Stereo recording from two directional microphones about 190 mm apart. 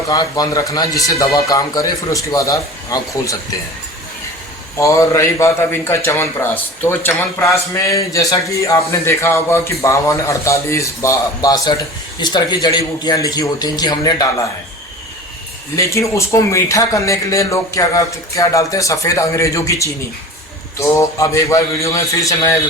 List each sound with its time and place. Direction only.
0.1 s a man's voice: 20° left (ahead or behind)
4.8 s a man's voice: 15° left (ahead or behind)
15.7 s a man's voice: 15° left (ahead or behind)